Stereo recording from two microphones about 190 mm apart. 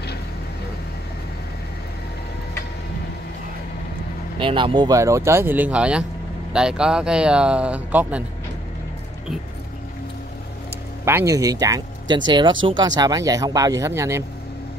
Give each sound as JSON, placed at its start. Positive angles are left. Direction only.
{"t": 4.4, "sound": "speech", "side_deg": -25}
{"t": 11.1, "sound": "speech", "side_deg": -15}